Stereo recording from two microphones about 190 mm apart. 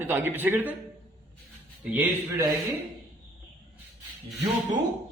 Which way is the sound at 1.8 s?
10° right (ahead or behind).